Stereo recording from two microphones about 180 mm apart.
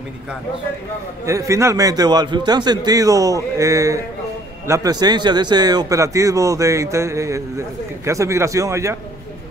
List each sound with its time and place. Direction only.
1.2 s a man's voice: 15° right (ahead or behind)